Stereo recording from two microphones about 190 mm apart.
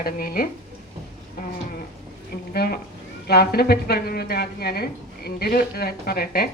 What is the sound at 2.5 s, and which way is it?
A woman's voice, 55° left (ahead or behind).